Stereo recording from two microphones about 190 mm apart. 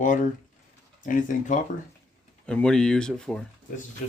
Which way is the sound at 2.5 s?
5° left (ahead or behind).